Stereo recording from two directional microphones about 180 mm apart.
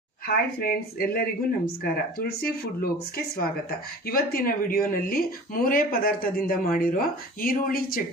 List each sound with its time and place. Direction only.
0.3 s speech: 55° left (ahead or behind)